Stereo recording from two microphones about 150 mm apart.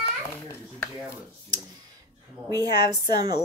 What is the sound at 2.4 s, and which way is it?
Speech, 25° right (ahead or behind).